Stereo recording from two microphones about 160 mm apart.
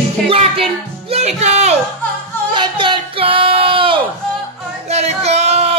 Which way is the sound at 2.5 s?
30° right (ahead or behind).